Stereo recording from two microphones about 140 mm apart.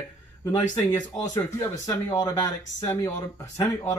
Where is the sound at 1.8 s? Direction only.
25° left (ahead or behind).